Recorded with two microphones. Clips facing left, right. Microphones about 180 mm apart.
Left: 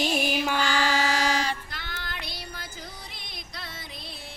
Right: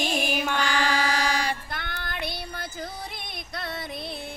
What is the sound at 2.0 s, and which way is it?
Child singing, 55° right (ahead or behind).